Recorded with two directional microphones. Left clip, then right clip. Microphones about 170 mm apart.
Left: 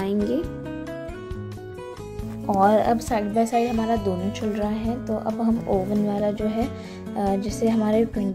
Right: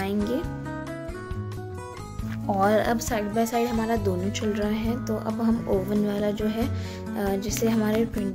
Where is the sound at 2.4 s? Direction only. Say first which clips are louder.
Left 4 dB; 15° left (ahead or behind).